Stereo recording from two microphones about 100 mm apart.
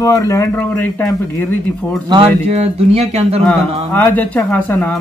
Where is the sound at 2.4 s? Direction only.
90° right.